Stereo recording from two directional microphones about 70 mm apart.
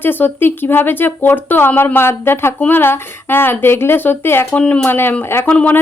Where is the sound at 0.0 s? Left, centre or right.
Left.